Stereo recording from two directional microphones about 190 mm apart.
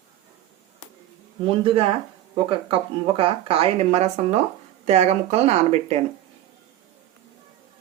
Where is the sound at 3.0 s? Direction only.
30° right (ahead or behind).